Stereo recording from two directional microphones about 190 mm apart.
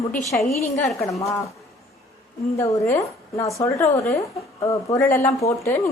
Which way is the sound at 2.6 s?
15° left (ahead or behind).